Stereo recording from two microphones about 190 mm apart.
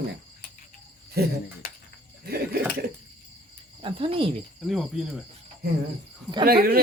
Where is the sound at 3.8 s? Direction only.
30° right (ahead or behind).